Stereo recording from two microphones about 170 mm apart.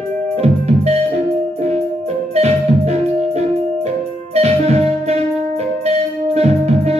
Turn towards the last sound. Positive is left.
turn(degrees=-40)  # may be behind; listen again after turning